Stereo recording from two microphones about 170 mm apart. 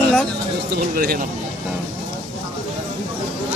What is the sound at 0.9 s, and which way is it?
Speech, 55° right (ahead or behind).